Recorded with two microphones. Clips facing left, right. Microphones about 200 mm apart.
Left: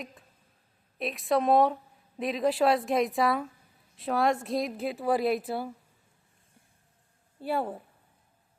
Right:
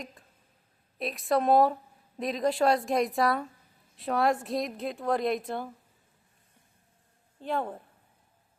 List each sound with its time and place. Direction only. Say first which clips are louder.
0.0 s a woman's voice: left 1 dB; centre (ahead or behind)
7.3 s a woman's voice: left 1 dB; 10° left (ahead or behind)